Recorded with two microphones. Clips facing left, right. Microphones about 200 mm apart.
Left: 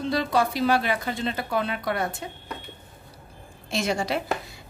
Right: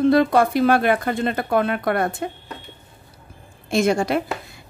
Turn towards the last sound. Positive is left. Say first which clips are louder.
# right 7 dB
turn(degrees=-50)  # may be behind; listen again after turning